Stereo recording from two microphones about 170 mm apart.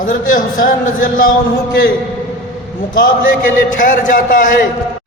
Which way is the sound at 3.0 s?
50° left (ahead or behind).